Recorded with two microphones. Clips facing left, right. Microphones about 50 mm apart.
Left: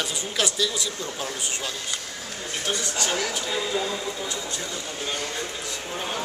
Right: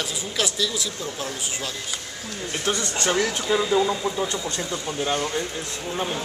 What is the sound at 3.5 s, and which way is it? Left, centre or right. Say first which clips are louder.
Speech: right 9 dB; right.